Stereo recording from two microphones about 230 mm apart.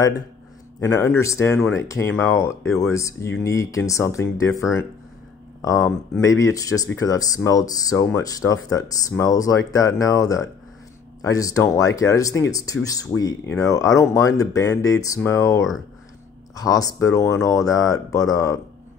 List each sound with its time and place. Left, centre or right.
0.7 s speech: centre